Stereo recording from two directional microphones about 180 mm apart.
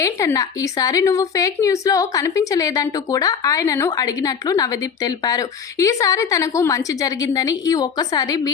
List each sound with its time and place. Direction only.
0.0 s a woman's voice: 15° left (ahead or behind)